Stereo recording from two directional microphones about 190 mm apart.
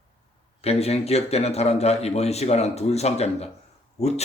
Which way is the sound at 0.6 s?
35° left (ahead or behind).